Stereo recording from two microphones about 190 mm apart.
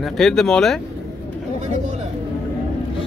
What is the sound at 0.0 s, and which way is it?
Speech, centre (ahead or behind).